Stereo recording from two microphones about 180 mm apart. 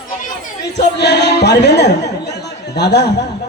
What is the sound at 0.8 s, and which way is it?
Chatter, 70° left (ahead or behind).